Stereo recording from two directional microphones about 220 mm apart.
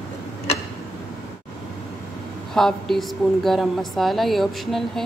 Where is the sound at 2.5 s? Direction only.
Centre (ahead or behind).